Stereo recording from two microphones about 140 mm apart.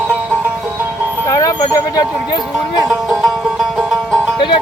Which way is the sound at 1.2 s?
25° left (ahead or behind).